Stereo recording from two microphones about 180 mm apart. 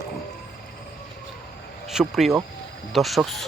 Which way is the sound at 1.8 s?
Centre (ahead or behind).